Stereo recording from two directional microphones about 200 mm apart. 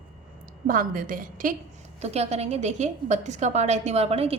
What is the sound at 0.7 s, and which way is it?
Speech, 45° right (ahead or behind).